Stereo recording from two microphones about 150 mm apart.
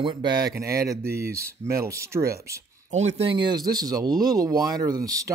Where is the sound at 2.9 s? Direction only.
50° right (ahead or behind).